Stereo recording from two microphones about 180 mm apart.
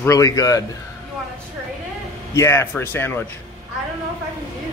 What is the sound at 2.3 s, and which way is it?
Speech, 15° left (ahead or behind).